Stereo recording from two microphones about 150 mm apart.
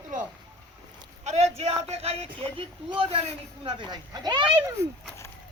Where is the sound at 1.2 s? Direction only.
50° right (ahead or behind); by 4.6 s 30° right (ahead or behind).